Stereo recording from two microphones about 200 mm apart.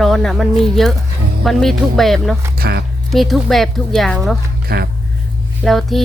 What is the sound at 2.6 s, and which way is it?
Speech, 50° right (ahead or behind).